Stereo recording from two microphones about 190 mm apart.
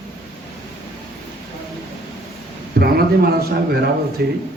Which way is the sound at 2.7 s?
55° right (ahead or behind).